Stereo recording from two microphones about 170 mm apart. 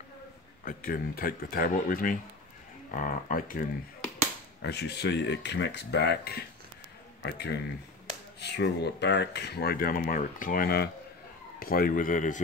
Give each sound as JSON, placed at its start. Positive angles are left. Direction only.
{"t": 0.7, "sound": "speech", "side_deg": 60}
{"t": 4.6, "sound": "speech", "side_deg": 80}